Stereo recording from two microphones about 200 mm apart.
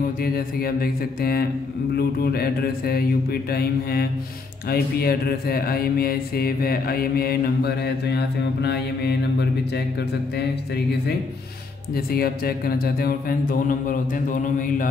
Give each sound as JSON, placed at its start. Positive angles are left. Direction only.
{"t": 0.2, "sound": "speech", "side_deg": 45}
{"t": 11.9, "sound": "speech", "side_deg": 50}